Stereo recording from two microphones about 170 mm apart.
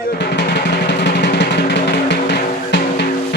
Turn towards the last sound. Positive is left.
turn(degrees=80)